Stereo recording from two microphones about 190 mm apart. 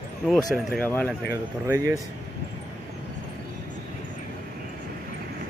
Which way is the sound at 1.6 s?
15° right (ahead or behind).